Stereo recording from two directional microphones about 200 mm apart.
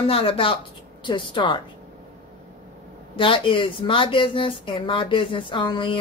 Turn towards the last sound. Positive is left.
turn(degrees=25)  # may be behind; listen again after turning